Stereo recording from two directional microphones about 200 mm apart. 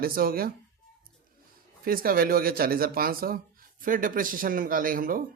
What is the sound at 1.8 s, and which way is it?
Speech, 45° right (ahead or behind).